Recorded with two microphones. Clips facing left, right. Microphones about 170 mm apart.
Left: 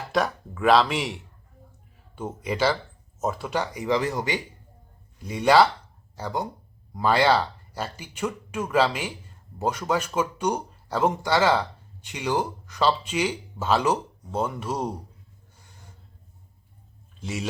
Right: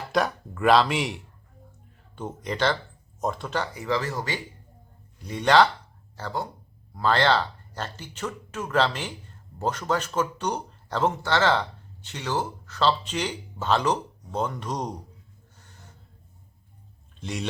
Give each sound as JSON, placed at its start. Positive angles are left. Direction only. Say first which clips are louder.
{"t": 0.1, "sound": "speech", "louder": "even", "side_deg": 0}
{"t": 15.5, "sound": "a sound", "louder": "even", "side_deg": 10}
{"t": 17.2, "sound": "speech", "louder": "left 1 dB", "side_deg": 5}